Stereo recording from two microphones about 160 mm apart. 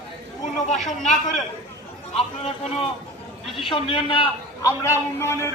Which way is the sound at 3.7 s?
35° left (ahead or behind).